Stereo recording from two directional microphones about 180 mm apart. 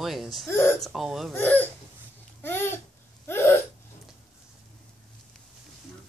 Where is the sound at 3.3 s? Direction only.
15° left (ahead or behind).